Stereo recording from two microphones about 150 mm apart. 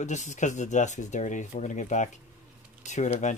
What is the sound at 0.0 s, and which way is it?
Speech, 55° left (ahead or behind).